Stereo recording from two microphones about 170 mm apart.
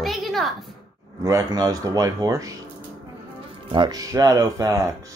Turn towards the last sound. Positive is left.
turn(degrees=-20)  # may be behind; listen again after turning